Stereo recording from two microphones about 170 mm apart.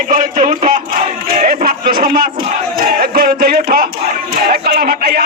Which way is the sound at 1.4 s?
60° right (ahead or behind).